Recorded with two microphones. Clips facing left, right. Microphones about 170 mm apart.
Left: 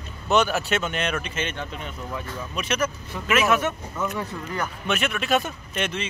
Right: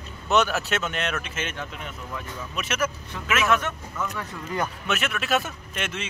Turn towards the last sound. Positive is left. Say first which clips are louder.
# left 4 dB
turn(degrees=-5)  # may be behind; listen again after turning